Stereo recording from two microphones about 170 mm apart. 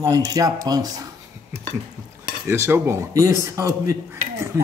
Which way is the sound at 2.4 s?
15° right (ahead or behind).